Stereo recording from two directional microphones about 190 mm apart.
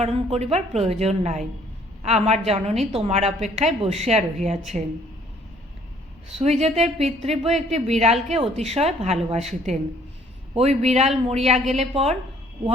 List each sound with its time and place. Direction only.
0.0 s a woman's voice: 35° right (ahead or behind)
6.3 s a woman's voice: 35° right (ahead or behind)